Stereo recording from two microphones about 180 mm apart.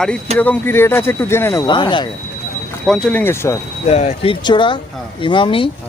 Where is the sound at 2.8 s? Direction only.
5° left (ahead or behind).